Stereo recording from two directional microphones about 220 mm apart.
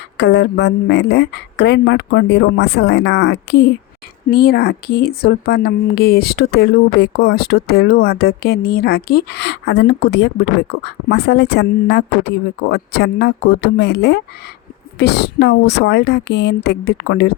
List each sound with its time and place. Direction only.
0.2 s speech: 50° left (ahead or behind)